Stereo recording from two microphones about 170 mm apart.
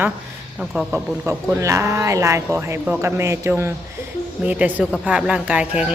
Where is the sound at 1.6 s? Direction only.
15° right (ahead or behind).